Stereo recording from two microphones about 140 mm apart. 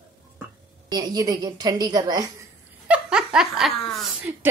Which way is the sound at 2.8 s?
10° right (ahead or behind).